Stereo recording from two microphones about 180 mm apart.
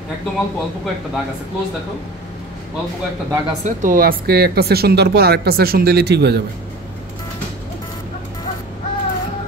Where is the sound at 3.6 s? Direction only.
50° right (ahead or behind); by 6.4 s 65° right (ahead or behind).